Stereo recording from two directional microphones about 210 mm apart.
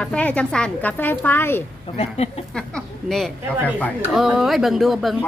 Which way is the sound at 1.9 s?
30° left (ahead or behind).